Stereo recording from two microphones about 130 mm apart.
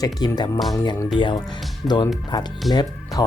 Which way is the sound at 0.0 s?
30° left (ahead or behind).